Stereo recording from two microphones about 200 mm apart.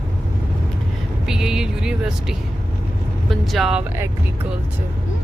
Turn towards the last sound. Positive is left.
turn(degrees=-10)  # may be behind; listen again after turning